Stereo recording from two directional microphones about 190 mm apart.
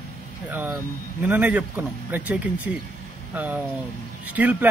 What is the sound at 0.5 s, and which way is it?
Speech, 10° right (ahead or behind).